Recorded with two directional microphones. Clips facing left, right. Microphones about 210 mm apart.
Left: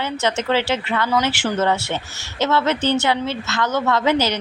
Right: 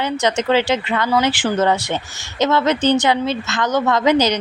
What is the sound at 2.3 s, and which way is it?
Speech, 15° right (ahead or behind).